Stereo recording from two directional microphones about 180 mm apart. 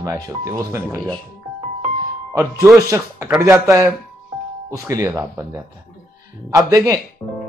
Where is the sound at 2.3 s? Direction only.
15° right (ahead or behind).